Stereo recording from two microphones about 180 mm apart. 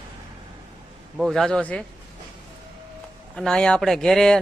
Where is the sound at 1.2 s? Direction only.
Centre (ahead or behind).